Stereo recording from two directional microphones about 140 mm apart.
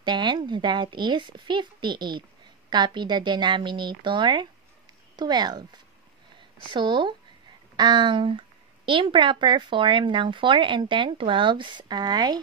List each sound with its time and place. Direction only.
0.0 s a woman's voice: 35° right (ahead or behind)